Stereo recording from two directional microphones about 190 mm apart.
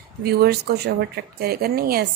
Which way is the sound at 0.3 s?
55° right (ahead or behind).